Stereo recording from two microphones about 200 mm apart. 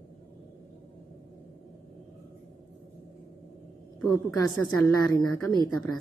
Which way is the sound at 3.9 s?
15° left (ahead or behind).